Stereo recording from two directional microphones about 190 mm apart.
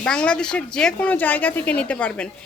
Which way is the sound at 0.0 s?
5° left (ahead or behind).